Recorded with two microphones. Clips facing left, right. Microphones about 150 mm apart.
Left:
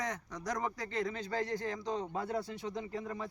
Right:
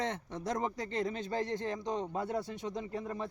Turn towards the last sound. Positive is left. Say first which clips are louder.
# right 1 dB
turn(degrees=-25)  # may be behind; listen again after turning